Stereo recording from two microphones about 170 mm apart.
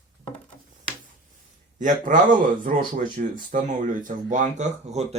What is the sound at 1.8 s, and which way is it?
Speech, 50° right (ahead or behind).